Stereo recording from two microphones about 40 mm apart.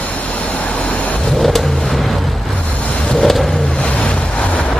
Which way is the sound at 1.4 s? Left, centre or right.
Centre.